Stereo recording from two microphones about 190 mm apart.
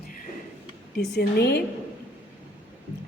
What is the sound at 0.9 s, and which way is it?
Speech, 60° left (ahead or behind).